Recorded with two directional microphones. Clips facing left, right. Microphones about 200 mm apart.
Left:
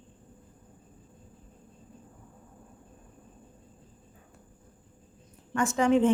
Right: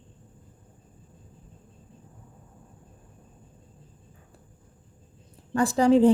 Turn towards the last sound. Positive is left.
turn(degrees=-35)  # may be behind; listen again after turning